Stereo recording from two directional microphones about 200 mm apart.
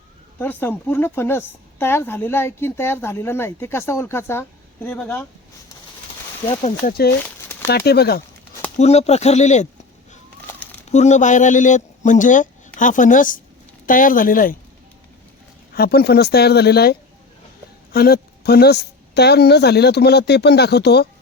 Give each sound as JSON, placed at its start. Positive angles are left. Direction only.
{"t": 0.3, "sound": "a woman's voice", "side_deg": 10}
{"t": 6.6, "sound": "a man's voice", "side_deg": 35}
{"t": 7.2, "sound": "a sound", "side_deg": 10}
{"t": 7.7, "sound": "speech", "side_deg": 55}
{"t": 8.8, "sound": "a man's voice", "side_deg": 35}
{"t": 10.4, "sound": "crumpling", "side_deg": 10}
{"t": 10.8, "sound": "speech", "side_deg": 35}
{"t": 15.7, "sound": "speech", "side_deg": 50}